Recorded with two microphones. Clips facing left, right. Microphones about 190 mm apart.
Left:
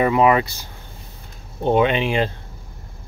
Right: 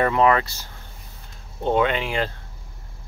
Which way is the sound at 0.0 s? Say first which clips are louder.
Left 3 dB; 10° left (ahead or behind).